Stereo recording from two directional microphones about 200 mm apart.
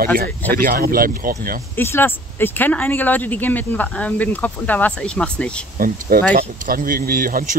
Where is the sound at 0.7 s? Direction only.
45° right (ahead or behind).